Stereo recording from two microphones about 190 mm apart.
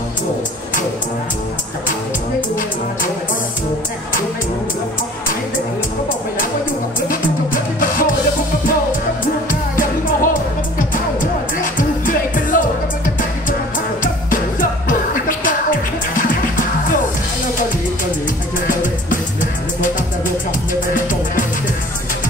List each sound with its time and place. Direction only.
7.1 s music: 45° left (ahead or behind)
9.5 s music: 45° left (ahead or behind)
14.0 s music: 45° left (ahead or behind)
18.7 s music: 45° left (ahead or behind)
20.9 s music: 45° left (ahead or behind)